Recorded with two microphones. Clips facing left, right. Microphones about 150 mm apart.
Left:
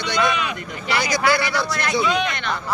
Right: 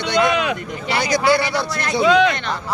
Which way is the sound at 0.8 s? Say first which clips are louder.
Right 3 dB; 30° right (ahead or behind).